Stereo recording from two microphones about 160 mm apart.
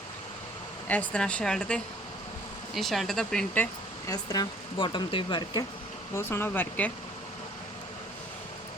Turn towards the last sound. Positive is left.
turn(degrees=10)  # may be behind; listen again after turning